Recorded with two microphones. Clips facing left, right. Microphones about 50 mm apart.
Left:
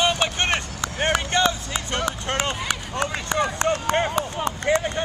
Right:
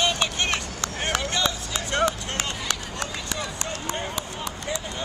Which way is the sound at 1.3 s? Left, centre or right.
Left.